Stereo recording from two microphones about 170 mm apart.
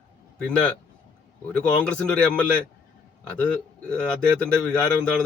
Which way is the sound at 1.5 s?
5° left (ahead or behind).